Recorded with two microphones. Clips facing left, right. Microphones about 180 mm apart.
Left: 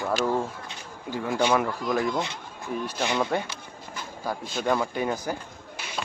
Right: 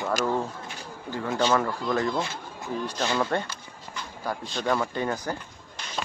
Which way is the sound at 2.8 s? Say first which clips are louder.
Even; 15° left (ahead or behind).